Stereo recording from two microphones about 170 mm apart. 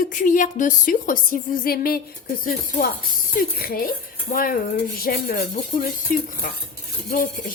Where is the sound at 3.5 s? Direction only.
60° left (ahead or behind).